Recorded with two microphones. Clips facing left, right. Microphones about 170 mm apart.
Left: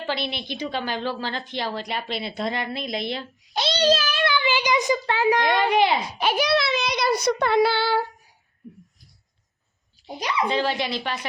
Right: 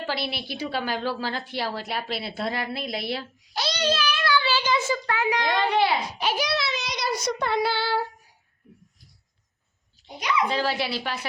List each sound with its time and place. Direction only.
0.0 s a woman's voice: 5° right (ahead or behind)
3.5 s a child's voice: 25° left (ahead or behind)
3.8 s a child's voice: 40° left (ahead or behind)
4.2 s a child's voice: 20° left (ahead or behind)
5.3 s child singing: 55° left (ahead or behind)
5.5 s a child's voice: 15° left (ahead or behind)
6.1 s child singing: 55° left (ahead or behind)
10.2 s a child's voice: 35° left (ahead or behind)
10.5 s speech: 5° right (ahead or behind)